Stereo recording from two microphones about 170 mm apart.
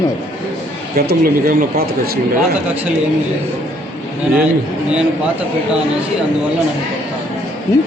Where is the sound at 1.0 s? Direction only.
65° right (ahead or behind).